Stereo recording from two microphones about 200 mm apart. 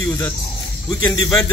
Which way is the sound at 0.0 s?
15° left (ahead or behind).